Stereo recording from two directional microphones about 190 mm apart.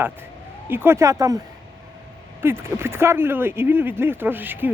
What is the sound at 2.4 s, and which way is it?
Speech, 10° right (ahead or behind).